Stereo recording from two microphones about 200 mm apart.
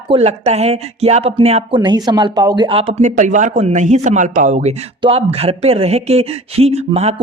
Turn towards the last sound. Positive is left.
turn(degrees=-30)  # may be behind; listen again after turning